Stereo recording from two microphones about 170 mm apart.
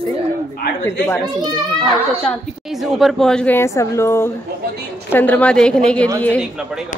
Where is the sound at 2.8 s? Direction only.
Centre (ahead or behind).